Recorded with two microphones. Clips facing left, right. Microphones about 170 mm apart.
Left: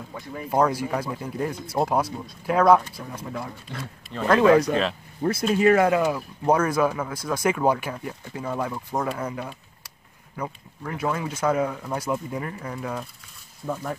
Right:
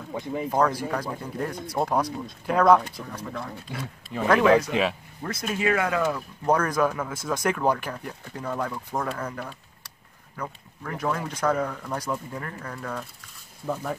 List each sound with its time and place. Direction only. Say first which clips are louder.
0.1 s speech: right 8 dB; 20° right (ahead or behind)
0.5 s speech: left 3 dB; 10° left (ahead or behind)
3.7 s speech: right 3 dB; 5° right (ahead or behind)
4.4 s speech: left 3 dB; 20° left (ahead or behind)
5.2 s speech: left 7 dB; 30° left (ahead or behind)
5.9 s speech: left 2 dB; 10° left (ahead or behind)